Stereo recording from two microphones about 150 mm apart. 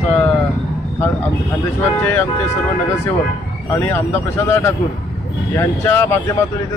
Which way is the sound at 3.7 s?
15° left (ahead or behind).